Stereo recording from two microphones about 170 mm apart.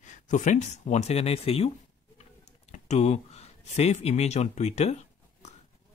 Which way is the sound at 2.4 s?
40° left (ahead or behind).